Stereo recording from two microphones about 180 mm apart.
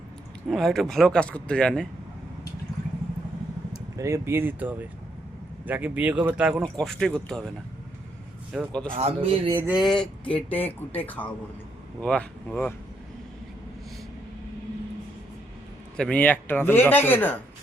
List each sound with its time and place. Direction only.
0.4 s speech: centre (ahead or behind)
3.9 s speech: 15° right (ahead or behind); by 7.5 s 5° left (ahead or behind)
8.5 s speech: 5° left (ahead or behind)
9.0 s speech: 35° right (ahead or behind)
9.6 s speech: 5° right (ahead or behind)
16.0 s speech: 5° left (ahead or behind)